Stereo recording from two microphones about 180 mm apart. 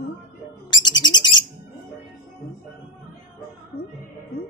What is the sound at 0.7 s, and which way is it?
Bird, 25° left (ahead or behind).